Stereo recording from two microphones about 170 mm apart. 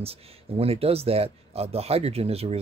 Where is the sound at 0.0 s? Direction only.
35° right (ahead or behind).